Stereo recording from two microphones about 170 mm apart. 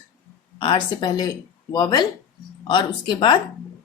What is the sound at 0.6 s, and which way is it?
A woman's voice, 30° left (ahead or behind).